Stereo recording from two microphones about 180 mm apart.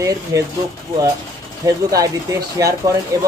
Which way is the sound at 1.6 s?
20° right (ahead or behind).